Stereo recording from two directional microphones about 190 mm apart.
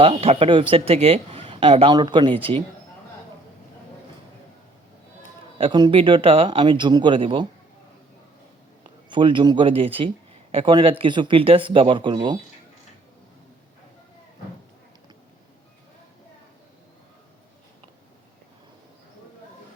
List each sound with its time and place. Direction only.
0.0 s speech: 30° right (ahead or behind)
5.5 s speech: 25° right (ahead or behind)
9.0 s speech: 25° right (ahead or behind)